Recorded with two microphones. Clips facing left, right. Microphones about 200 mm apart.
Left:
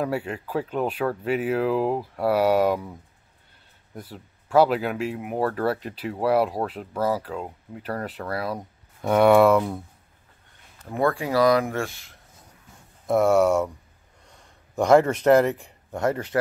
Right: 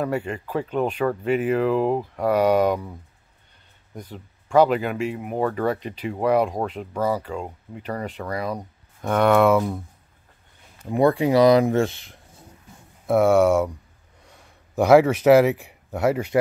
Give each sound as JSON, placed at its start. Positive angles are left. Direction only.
{"t": 0.0, "sound": "speech", "side_deg": 5}
{"t": 3.9, "sound": "speech", "side_deg": 5}
{"t": 10.8, "sound": "speech", "side_deg": -15}
{"t": 13.0, "sound": "speech", "side_deg": 0}
{"t": 14.8, "sound": "speech", "side_deg": -5}